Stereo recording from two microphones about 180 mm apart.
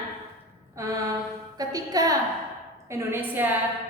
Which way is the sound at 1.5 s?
20° right (ahead or behind).